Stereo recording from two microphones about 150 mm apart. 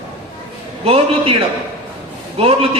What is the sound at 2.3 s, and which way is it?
Speech, 40° right (ahead or behind).